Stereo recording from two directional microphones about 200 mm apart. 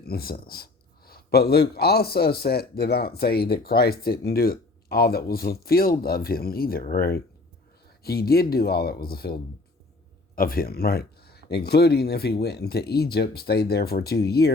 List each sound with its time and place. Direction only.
0.0 s a man's voice: 50° left (ahead or behind)